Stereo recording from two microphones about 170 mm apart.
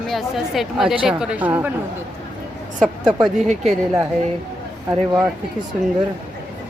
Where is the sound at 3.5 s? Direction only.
40° right (ahead or behind).